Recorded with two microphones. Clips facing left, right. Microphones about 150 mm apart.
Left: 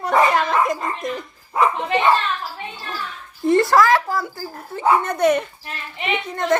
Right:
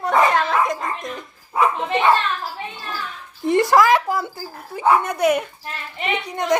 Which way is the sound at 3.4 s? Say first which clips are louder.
Even; 15° right (ahead or behind).